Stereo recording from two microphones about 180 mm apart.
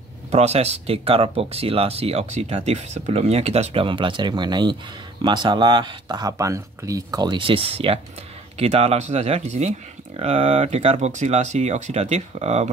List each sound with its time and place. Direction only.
0.3 s speech: 35° right (ahead or behind)